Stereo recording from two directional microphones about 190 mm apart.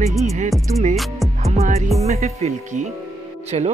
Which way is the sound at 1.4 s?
35° right (ahead or behind).